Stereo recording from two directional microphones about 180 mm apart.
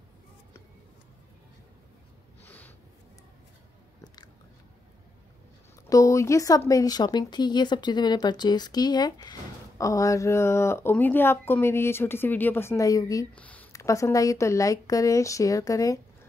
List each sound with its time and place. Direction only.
2.4 s a sound: 10° left (ahead or behind)
4.0 s biting: 25° left (ahead or behind)
5.9 s speech: 20° left (ahead or behind)
13.4 s speech: 10° left (ahead or behind)